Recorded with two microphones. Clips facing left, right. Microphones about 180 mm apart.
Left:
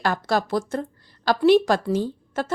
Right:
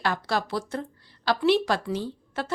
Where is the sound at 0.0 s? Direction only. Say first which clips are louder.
Left 4 dB; 45° left (ahead or behind).